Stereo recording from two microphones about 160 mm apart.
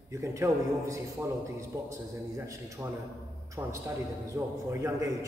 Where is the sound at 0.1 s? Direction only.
20° right (ahead or behind).